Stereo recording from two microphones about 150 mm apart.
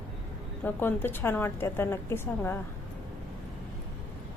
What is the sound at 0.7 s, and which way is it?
A woman's voice, 15° left (ahead or behind).